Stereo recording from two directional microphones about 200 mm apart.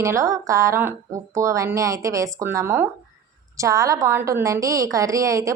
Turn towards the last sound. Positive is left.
turn(degrees=-15)  # may be behind; listen again after turning